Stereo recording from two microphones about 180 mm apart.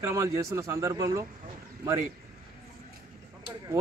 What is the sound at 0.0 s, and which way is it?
A man's voice, 15° right (ahead or behind).